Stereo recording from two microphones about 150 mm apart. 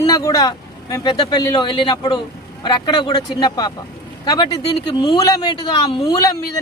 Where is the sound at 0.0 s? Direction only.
25° left (ahead or behind).